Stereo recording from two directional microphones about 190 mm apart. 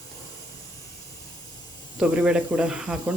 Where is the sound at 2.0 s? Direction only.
5° right (ahead or behind).